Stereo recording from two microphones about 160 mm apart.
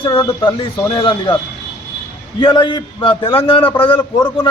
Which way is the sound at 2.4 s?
30° left (ahead or behind).